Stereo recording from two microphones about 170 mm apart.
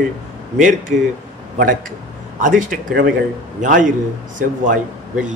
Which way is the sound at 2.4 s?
50° right (ahead or behind).